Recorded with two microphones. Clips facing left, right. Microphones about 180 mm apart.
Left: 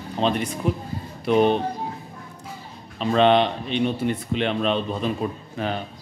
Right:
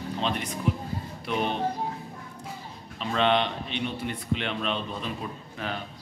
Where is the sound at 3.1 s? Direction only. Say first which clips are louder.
Left 7 dB; 35° left (ahead or behind).